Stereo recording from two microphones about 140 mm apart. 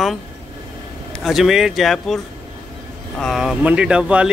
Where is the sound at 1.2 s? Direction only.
5° right (ahead or behind).